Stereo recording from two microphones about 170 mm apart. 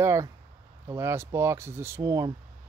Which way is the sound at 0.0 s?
15° right (ahead or behind).